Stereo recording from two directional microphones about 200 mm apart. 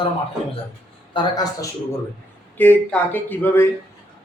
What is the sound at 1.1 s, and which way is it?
Speech, 25° left (ahead or behind).